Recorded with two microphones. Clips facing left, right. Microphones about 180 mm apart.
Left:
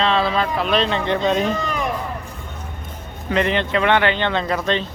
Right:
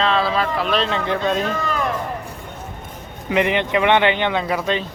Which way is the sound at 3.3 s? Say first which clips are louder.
Right 1 dB; 15° right (ahead or behind).